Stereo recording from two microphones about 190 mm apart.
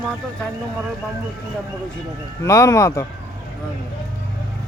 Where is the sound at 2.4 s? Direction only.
15° left (ahead or behind).